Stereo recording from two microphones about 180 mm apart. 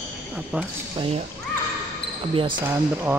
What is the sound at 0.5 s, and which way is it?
Speech, 5° right (ahead or behind).